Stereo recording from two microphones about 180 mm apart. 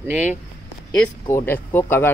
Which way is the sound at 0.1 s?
10° right (ahead or behind).